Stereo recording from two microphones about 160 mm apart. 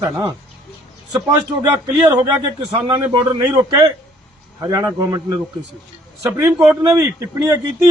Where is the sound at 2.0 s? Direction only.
25° right (ahead or behind).